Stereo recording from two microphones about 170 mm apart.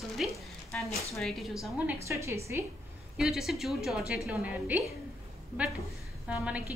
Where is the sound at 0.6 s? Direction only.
15° left (ahead or behind).